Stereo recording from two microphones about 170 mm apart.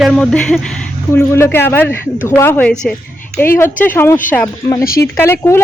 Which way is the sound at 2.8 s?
5° left (ahead or behind).